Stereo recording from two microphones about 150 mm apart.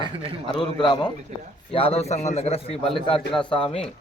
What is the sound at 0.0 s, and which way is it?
Speech, 35° right (ahead or behind).